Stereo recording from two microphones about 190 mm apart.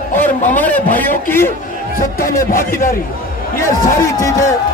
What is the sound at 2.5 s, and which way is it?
Speech, 45° left (ahead or behind).